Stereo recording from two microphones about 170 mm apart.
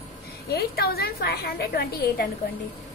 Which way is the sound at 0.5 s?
65° left (ahead or behind).